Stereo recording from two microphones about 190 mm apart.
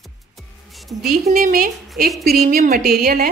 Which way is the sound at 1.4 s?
45° right (ahead or behind).